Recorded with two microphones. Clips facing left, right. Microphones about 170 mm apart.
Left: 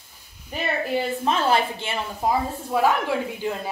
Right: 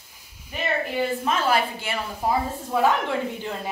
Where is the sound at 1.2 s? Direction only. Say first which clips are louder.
Left 3 dB; 25° left (ahead or behind).